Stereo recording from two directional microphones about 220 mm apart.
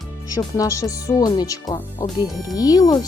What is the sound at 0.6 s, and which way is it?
Speech, 15° left (ahead or behind).